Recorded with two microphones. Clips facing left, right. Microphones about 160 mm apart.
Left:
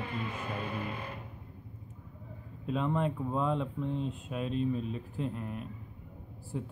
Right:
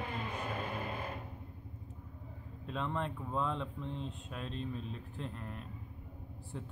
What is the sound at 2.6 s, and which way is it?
Speech, 5° left (ahead or behind).